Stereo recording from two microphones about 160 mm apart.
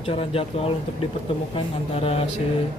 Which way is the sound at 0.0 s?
35° left (ahead or behind).